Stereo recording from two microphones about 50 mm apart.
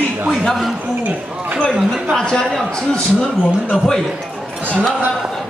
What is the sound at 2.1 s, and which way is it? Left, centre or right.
Speech, centre.